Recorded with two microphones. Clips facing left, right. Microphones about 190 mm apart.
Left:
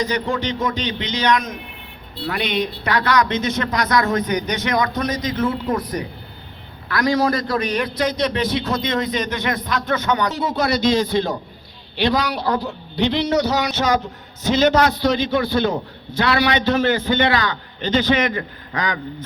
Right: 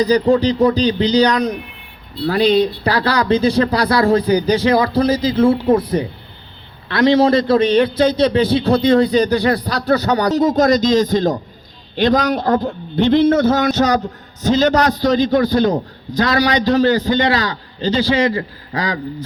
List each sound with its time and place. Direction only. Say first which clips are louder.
0.0 s a man's voice: right 9 dB; 35° right (ahead or behind)